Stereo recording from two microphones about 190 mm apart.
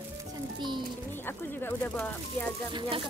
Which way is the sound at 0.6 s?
25° right (ahead or behind).